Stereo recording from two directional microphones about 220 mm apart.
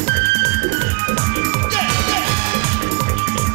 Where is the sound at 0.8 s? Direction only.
15° right (ahead or behind).